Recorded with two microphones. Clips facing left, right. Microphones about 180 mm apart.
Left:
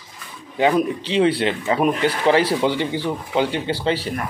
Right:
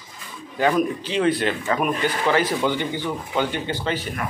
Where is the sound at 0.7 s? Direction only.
30° left (ahead or behind).